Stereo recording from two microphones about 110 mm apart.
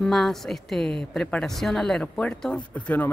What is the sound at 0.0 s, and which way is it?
A woman's voice, 5° left (ahead or behind).